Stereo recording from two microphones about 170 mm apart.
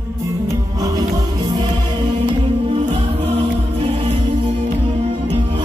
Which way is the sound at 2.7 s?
35° right (ahead or behind).